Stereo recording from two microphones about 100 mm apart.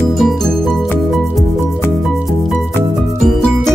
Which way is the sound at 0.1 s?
Centre (ahead or behind).